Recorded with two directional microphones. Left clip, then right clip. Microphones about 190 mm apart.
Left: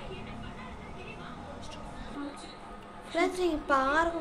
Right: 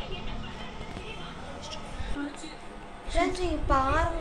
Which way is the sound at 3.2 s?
75° left (ahead or behind).